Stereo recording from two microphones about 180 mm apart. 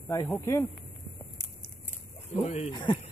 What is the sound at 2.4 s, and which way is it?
Speech, 35° left (ahead or behind).